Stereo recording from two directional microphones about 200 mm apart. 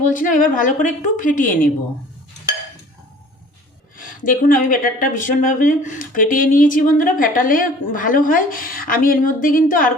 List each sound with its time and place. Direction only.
0.1 s a woman's voice: 40° left (ahead or behind)
3.9 s speech: 45° left (ahead or behind)